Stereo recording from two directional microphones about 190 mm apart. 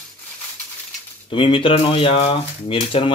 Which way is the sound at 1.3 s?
25° left (ahead or behind).